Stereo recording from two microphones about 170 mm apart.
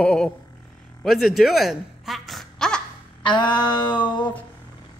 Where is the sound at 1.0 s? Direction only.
Centre (ahead or behind).